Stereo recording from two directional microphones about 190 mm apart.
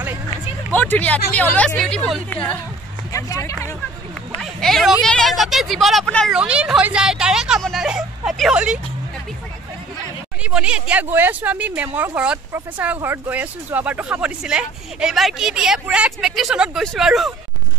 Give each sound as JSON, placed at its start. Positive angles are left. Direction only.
{"t": 0.7, "sound": "a woman's voice", "side_deg": 10}
{"t": 4.4, "sound": "speech", "side_deg": 0}
{"t": 10.4, "sound": "speech", "side_deg": -5}